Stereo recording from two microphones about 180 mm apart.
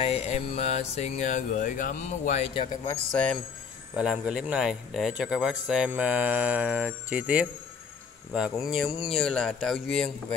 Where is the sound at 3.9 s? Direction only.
5° right (ahead or behind).